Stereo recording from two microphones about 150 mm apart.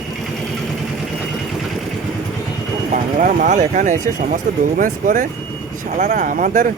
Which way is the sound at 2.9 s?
60° right (ahead or behind).